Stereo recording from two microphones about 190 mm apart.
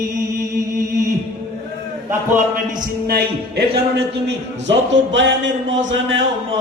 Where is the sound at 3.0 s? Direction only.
55° right (ahead or behind).